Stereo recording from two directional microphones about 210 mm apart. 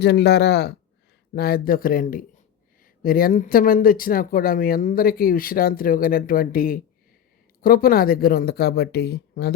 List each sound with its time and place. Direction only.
0.0 s speech: 50° left (ahead or behind)